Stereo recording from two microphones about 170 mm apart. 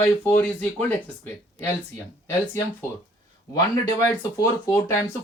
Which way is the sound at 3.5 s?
20° left (ahead or behind).